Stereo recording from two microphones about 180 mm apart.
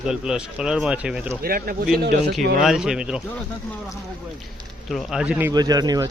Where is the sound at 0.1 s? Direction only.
5° right (ahead or behind).